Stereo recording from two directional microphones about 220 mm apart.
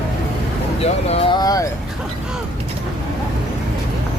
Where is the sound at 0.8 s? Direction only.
25° left (ahead or behind).